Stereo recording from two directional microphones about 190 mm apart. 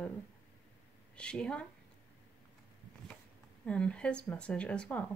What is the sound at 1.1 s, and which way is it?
Speech, 5° left (ahead or behind).